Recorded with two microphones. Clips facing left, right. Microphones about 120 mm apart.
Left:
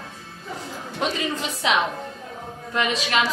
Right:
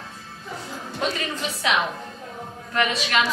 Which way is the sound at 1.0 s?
20° left (ahead or behind).